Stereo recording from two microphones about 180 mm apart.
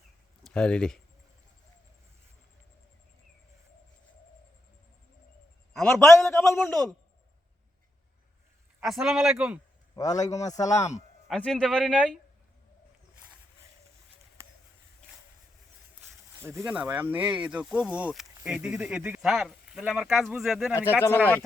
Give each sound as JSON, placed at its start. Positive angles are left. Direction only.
{"t": 0.4, "sound": "speech", "side_deg": 5}
{"t": 5.7, "sound": "a sound", "side_deg": 0}
{"t": 6.0, "sound": "a man's voice", "side_deg": 15}
{"t": 8.8, "sound": "speech", "side_deg": 0}
{"t": 9.9, "sound": "a man's voice", "side_deg": 20}
{"t": 11.3, "sound": "speech", "side_deg": 5}
{"t": 16.4, "sound": "speech", "side_deg": -15}